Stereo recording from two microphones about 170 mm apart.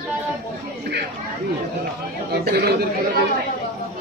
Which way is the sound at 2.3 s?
70° right (ahead or behind).